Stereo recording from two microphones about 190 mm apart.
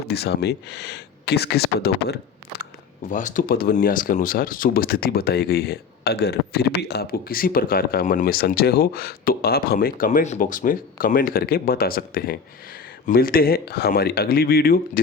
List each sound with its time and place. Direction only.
0.1 s speech: 60° left (ahead or behind)
3.1 s speech: 40° left (ahead or behind)